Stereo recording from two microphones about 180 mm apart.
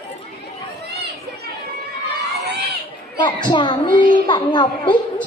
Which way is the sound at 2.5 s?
65° right (ahead or behind).